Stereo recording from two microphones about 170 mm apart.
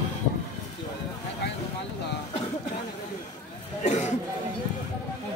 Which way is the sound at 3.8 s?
40° left (ahead or behind).